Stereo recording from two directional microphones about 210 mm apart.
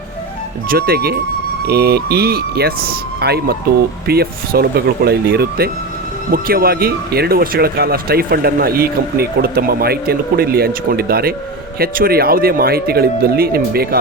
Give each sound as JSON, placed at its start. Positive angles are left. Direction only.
{"t": 0.7, "sound": "speech", "side_deg": -45}